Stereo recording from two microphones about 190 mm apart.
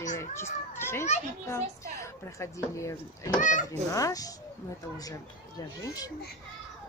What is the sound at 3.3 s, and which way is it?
Speech, 45° left (ahead or behind).